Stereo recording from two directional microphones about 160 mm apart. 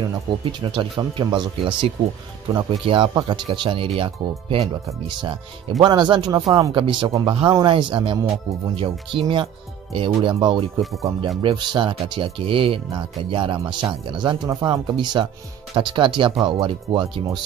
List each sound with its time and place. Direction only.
0.4 s speech: 30° right (ahead or behind)